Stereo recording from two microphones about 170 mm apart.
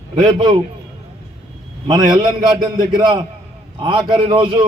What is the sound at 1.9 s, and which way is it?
A man's voice, 25° right (ahead or behind).